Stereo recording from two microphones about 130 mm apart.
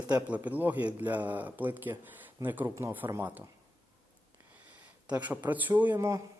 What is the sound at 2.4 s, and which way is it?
A man's voice, 15° right (ahead or behind).